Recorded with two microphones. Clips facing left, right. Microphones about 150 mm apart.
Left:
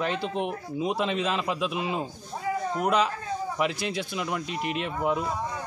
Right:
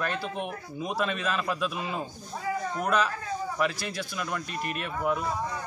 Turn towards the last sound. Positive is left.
turn(degrees=20)  # may be behind; listen again after turning